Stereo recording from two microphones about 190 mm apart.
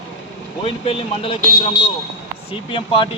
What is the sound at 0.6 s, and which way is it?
A man's voice, 30° left (ahead or behind).